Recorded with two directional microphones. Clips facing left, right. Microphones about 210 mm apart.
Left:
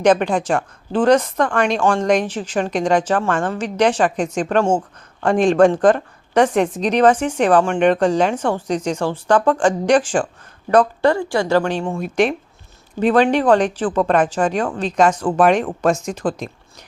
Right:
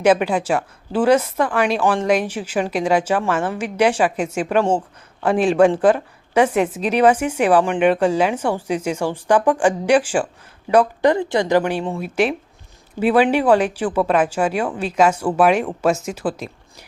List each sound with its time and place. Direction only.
0.0 s speech: 5° right (ahead or behind)
11.9 s speech: 5° right (ahead or behind)